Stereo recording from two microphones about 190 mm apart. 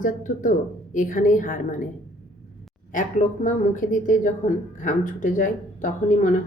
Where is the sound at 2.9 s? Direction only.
40° left (ahead or behind).